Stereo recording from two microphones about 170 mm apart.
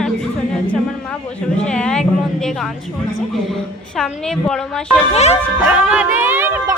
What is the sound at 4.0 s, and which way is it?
A woman's voice, 5° left (ahead or behind).